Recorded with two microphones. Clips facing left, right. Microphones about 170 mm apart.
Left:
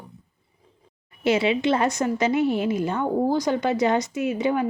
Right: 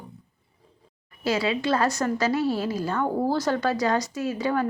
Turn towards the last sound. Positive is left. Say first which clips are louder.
# left 2 dB
turn(degrees=20)  # may be behind; listen again after turning